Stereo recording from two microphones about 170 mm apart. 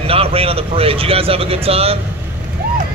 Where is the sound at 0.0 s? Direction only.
35° right (ahead or behind).